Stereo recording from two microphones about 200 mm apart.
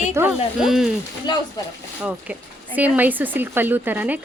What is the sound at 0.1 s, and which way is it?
Speech, 10° right (ahead or behind).